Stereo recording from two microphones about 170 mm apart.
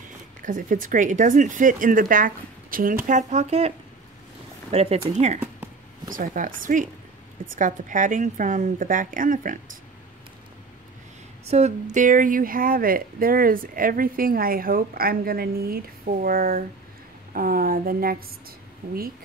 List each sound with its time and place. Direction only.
0.4 s speech: 50° right (ahead or behind)
6.1 s speech: 55° right (ahead or behind)
11.4 s speech: 40° right (ahead or behind); by 18.1 s 60° right (ahead or behind)